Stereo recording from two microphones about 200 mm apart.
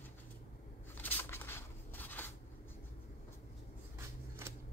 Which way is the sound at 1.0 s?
10° left (ahead or behind).